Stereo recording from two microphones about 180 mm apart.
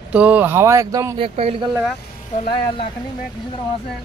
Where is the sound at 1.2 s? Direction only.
35° right (ahead or behind).